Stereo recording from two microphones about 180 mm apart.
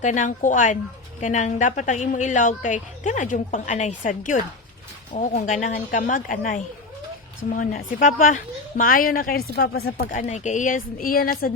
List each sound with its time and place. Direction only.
0.0 s a woman's voice: 45° left (ahead or behind)